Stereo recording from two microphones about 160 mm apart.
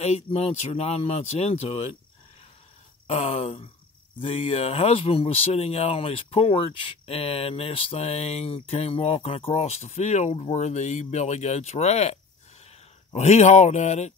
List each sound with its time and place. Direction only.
0.0 s speech: 40° left (ahead or behind)
3.1 s speech: 40° left (ahead or behind)